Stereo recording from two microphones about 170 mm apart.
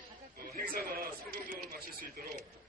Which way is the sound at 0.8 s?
60° right (ahead or behind).